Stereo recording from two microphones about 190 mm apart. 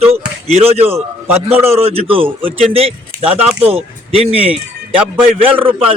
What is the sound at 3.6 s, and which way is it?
A man's voice, 30° right (ahead or behind).